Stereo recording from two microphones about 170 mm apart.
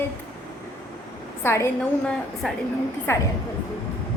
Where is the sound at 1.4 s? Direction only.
15° left (ahead or behind).